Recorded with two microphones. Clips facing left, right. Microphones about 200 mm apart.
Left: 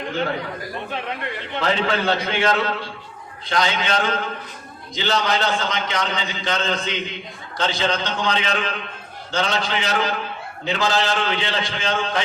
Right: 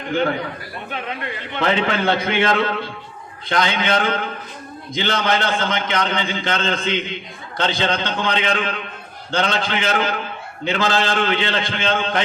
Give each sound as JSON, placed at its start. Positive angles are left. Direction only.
{"t": 1.5, "sound": "a man's voice", "side_deg": -60}